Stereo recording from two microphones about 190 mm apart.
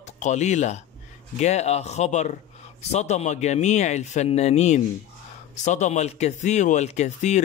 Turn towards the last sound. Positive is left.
turn(degrees=40)  # may be behind; listen again after turning